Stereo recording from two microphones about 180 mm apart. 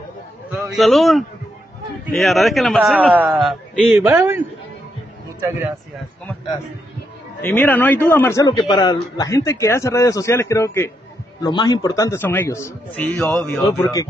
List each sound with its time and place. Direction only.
0.7 s a man's voice: centre (ahead or behind)
4.0 s a man's voice: 15° right (ahead or behind)
7.4 s a man's voice: 10° left (ahead or behind)